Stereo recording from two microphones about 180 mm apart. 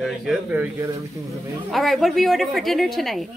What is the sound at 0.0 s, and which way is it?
A man's voice, 5° right (ahead or behind).